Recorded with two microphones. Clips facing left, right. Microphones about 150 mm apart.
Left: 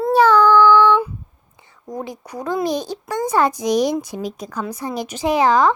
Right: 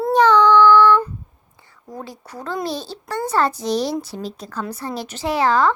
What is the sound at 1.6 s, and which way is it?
A child's voice, 20° left (ahead or behind).